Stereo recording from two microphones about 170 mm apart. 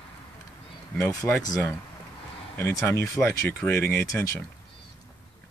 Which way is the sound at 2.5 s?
15° left (ahead or behind).